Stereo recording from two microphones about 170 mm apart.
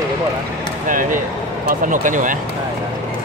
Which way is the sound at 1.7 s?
50° right (ahead or behind).